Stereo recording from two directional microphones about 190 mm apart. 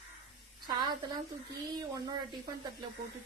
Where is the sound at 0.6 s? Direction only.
25° right (ahead or behind).